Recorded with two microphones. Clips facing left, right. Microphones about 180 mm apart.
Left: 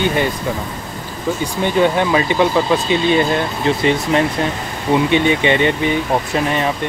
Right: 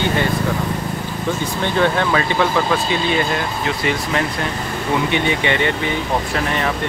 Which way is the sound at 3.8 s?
25° left (ahead or behind).